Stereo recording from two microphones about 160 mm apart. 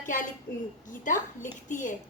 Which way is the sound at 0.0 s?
55° left (ahead or behind).